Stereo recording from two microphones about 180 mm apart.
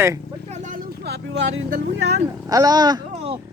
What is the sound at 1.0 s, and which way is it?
Vehicle, 70° right (ahead or behind).